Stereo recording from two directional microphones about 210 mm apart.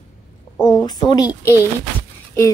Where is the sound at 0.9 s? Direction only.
20° left (ahead or behind).